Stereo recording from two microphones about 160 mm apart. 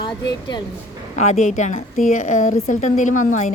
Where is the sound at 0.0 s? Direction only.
25° left (ahead or behind).